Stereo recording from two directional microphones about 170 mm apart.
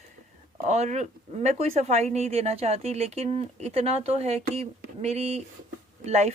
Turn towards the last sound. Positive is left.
turn(degrees=-40)  # may be behind; listen again after turning